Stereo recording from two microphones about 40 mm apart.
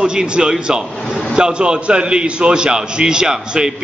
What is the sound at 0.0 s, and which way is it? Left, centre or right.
A man's voice, right.